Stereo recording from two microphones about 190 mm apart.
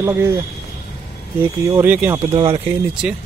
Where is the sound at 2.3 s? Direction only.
25° right (ahead or behind).